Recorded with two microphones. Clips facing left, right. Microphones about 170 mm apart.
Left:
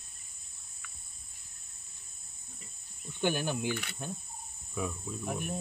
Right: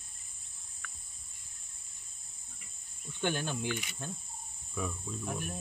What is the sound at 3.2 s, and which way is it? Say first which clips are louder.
Cricket: left 3 dB; 15° left (ahead or behind).